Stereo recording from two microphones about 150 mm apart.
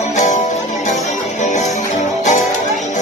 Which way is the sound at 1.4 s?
50° left (ahead or behind).